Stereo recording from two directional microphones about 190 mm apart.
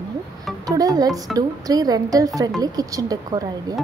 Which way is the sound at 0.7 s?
20° right (ahead or behind).